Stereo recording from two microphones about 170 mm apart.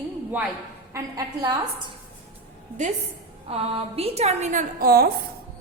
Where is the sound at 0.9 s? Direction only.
20° right (ahead or behind).